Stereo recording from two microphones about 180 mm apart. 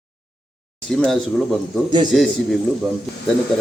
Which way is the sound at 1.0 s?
5° left (ahead or behind).